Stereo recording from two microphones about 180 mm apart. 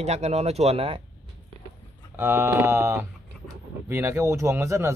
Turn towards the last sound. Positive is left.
turn(degrees=-15)  # may be behind; listen again after turning